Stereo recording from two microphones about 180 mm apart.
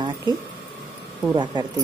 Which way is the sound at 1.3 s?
25° right (ahead or behind).